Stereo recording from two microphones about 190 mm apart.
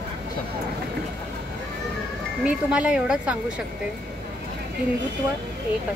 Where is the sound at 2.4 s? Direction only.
5° right (ahead or behind).